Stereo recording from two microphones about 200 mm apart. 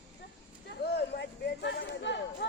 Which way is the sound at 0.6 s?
55° left (ahead or behind).